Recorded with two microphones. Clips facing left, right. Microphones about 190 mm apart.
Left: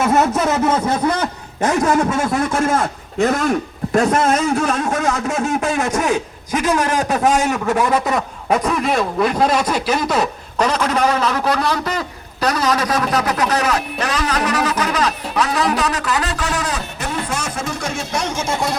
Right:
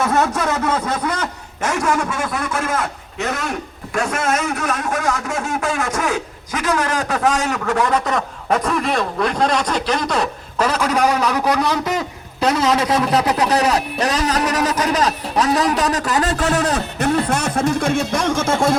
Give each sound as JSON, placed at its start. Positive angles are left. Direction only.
{"t": 0.0, "sound": "a man's voice", "side_deg": 20}
{"t": 1.6, "sound": "speech", "side_deg": 40}
{"t": 2.5, "sound": "a man's voice", "side_deg": 25}
{"t": 2.8, "sound": "a man's voice", "side_deg": 50}
{"t": 3.9, "sound": "a man's voice", "side_deg": 35}
{"t": 17.2, "sound": "music", "side_deg": -60}